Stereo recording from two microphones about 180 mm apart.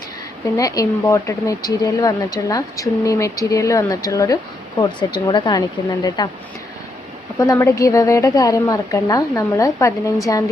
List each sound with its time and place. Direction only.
0.5 s speech: 20° left (ahead or behind)
7.3 s a woman's voice: 15° left (ahead or behind)